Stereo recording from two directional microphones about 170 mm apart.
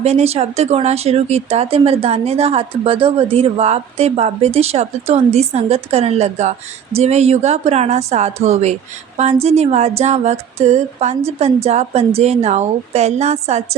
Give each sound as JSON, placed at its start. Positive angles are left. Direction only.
{"t": 0.0, "sound": "speech", "side_deg": -40}